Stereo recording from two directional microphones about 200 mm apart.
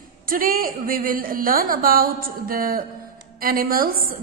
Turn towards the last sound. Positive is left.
turn(degrees=-45)  # may be behind; listen again after turning